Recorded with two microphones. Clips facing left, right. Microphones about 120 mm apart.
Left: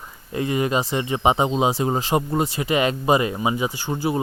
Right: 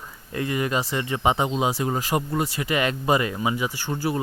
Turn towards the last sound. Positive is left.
turn(degrees=20)  # may be behind; listen again after turning